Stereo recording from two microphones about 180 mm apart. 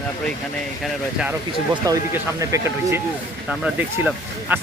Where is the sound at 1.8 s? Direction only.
20° right (ahead or behind).